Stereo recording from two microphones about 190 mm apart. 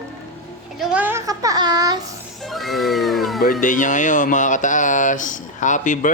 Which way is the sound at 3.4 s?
45° left (ahead or behind).